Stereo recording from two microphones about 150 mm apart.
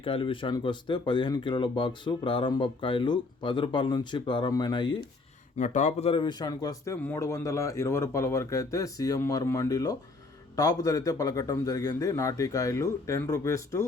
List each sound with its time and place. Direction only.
0.0 s speech: 35° left (ahead or behind)
5.5 s speech: 55° left (ahead or behind); by 13.8 s 20° left (ahead or behind)